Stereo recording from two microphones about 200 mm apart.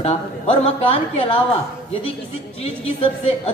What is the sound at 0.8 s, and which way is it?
Speech, 30° left (ahead or behind).